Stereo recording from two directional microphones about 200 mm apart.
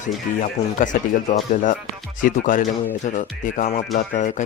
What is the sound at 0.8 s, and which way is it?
Speech, 40° left (ahead or behind).